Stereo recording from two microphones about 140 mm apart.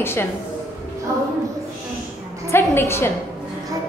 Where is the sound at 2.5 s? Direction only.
20° left (ahead or behind).